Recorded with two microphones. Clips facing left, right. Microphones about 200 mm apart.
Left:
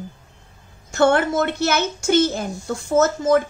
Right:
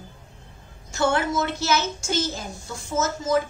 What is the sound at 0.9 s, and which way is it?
A woman's voice, 60° left (ahead or behind).